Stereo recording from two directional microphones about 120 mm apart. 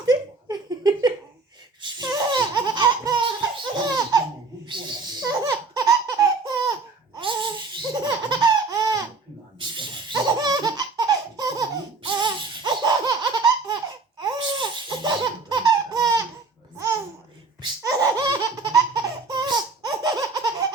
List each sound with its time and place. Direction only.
0.0 s a sound: 35° right (ahead or behind)
1.8 s laughter: 35° right (ahead or behind)
7.2 s laughter: 45° right (ahead or behind)
16.7 s babbling: 25° right (ahead or behind)
17.8 s laughter: 35° right (ahead or behind)